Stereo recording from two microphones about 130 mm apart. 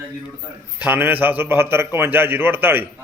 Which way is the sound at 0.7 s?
15° right (ahead or behind).